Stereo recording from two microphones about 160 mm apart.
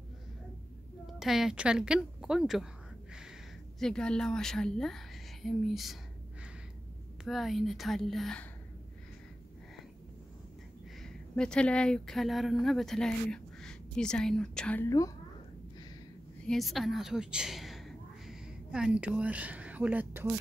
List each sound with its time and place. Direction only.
1.0 s a woman's voice: centre (ahead or behind)
3.8 s a woman's voice: 5° left (ahead or behind)
7.2 s a woman's voice: centre (ahead or behind)
11.0 s speech: 5° left (ahead or behind)
14.9 s a woman's voice: 20° left (ahead or behind)
16.4 s a woman's voice: centre (ahead or behind)